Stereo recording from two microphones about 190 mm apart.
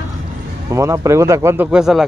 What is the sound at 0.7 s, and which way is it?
Speech, 15° right (ahead or behind).